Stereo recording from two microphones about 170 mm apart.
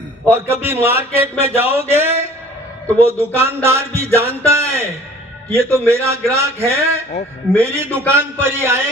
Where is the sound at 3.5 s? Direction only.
15° right (ahead or behind).